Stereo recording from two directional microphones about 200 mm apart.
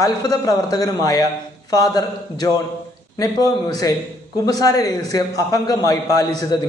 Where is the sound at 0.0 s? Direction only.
15° left (ahead or behind).